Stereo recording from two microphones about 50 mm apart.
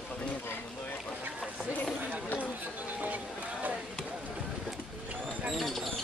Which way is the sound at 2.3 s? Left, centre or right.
Right.